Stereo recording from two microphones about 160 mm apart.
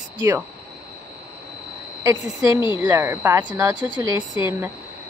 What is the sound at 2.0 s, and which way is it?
Speech, 20° right (ahead or behind).